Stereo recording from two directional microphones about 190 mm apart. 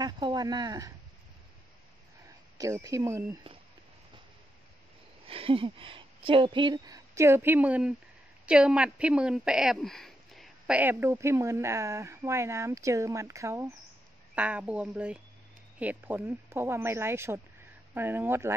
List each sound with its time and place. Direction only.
0.0 s speech: 20° right (ahead or behind)
2.5 s speech: 15° right (ahead or behind)
5.2 s speech: 30° right (ahead or behind); by 18.5 s 10° right (ahead or behind)